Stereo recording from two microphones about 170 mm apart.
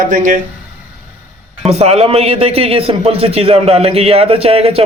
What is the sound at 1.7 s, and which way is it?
A man's voice, 35° right (ahead or behind).